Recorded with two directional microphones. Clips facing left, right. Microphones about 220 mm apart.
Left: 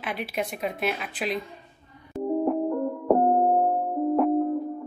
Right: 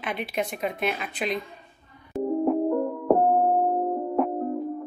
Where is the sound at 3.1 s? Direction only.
Centre (ahead or behind).